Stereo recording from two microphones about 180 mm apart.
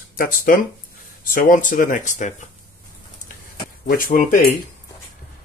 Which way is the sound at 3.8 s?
50° left (ahead or behind).